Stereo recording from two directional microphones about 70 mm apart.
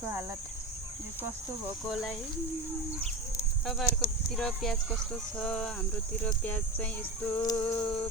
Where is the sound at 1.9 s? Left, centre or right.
Centre.